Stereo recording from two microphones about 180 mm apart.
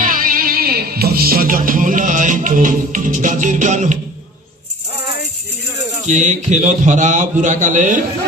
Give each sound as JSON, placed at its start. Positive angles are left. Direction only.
{"t": 0.0, "sound": "music", "side_deg": -50}
{"t": 6.1, "sound": "a man's voice", "side_deg": -40}